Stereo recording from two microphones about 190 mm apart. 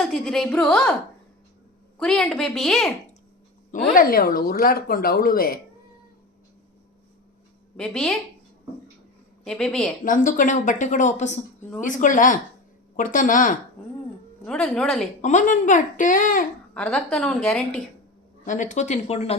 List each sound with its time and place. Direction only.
0.1 s a woman's voice: centre (ahead or behind)
2.0 s a woman's voice: 5° left (ahead or behind)
3.7 s speech: 45° left (ahead or behind)
7.8 s a woman's voice: 5° left (ahead or behind)
9.4 s a woman's voice: 5° left (ahead or behind)
10.0 s speech: 45° left (ahead or behind)
14.4 s a woman's voice: 5° left (ahead or behind)
15.2 s speech: 40° left (ahead or behind)
16.7 s a woman's voice: 5° left (ahead or behind)
18.4 s speech: 40° left (ahead or behind)